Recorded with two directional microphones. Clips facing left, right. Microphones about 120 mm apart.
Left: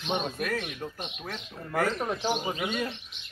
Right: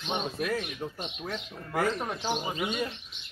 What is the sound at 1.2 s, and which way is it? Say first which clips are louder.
Speech: right 1 dB; 5° right (ahead or behind).